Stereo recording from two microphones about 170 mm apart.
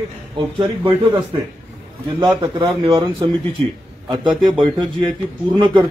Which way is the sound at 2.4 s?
20° right (ahead or behind).